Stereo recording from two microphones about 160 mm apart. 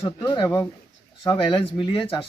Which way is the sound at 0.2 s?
30° left (ahead or behind).